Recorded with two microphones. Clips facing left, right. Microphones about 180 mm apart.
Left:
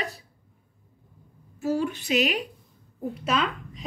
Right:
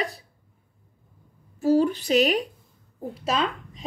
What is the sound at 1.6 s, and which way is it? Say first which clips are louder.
A woman's voice: right 6 dB; 35° right (ahead or behind).